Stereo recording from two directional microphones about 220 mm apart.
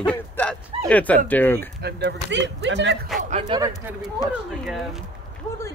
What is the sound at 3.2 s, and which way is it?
Speech, 35° right (ahead or behind).